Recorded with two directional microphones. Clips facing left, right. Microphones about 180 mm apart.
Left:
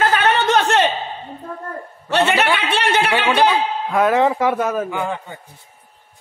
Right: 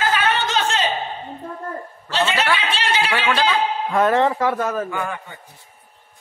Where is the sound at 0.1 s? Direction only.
65° left (ahead or behind).